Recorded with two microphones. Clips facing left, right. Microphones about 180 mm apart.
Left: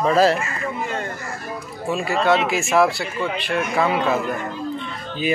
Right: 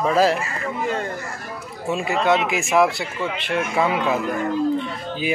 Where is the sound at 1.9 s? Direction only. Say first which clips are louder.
Left 1 dB; 20° right (ahead or behind).